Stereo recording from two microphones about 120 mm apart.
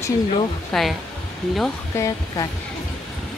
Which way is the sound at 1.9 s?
25° left (ahead or behind).